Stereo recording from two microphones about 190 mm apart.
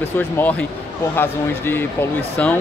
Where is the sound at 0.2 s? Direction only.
10° left (ahead or behind).